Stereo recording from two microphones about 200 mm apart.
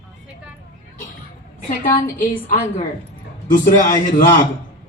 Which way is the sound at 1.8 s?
45° left (ahead or behind).